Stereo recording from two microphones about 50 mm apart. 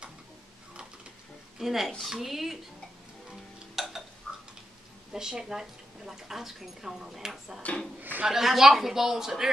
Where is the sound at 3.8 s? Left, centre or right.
Centre.